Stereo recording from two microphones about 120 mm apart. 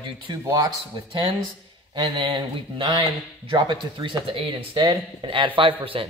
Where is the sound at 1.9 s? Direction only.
40° right (ahead or behind).